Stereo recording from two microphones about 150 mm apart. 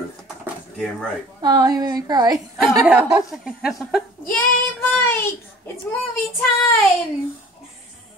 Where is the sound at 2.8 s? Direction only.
5° right (ahead or behind).